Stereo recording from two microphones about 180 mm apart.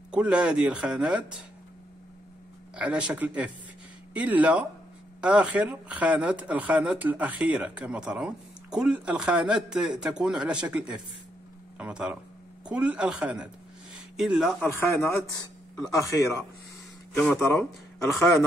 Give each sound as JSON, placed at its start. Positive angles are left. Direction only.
{"t": 0.1, "sound": "speech", "side_deg": -5}
{"t": 2.7, "sound": "speech", "side_deg": -5}
{"t": 14.6, "sound": "a man's voice", "side_deg": 10}
{"t": 17.1, "sound": "a man's voice", "side_deg": 5}